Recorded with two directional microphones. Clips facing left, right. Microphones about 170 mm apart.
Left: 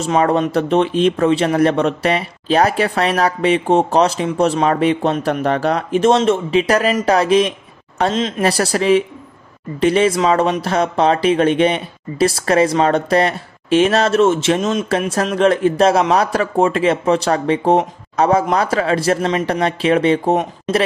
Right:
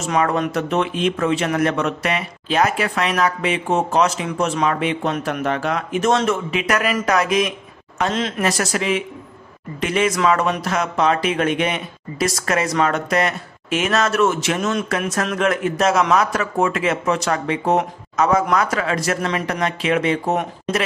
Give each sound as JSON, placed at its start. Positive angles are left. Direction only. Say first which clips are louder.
{"t": 0.0, "sound": "speech", "louder": "left 4 dB", "side_deg": 30}